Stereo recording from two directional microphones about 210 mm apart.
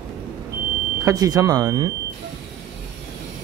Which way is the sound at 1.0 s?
15° right (ahead or behind).